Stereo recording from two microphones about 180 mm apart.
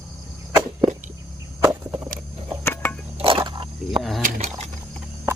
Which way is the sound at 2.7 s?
10° left (ahead or behind).